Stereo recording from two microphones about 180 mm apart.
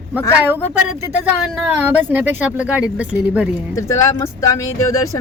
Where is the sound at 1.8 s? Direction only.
10° right (ahead or behind).